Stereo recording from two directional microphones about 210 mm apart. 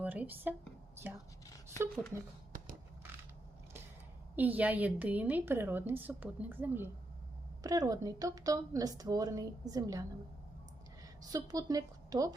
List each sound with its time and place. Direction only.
0.0 s a woman's voice: 10° right (ahead or behind)
4.4 s a woman's voice: 10° right (ahead or behind)